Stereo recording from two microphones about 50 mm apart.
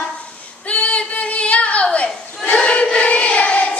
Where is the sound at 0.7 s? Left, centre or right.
Left.